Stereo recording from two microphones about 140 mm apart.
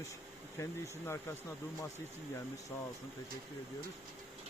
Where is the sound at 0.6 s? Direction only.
20° left (ahead or behind).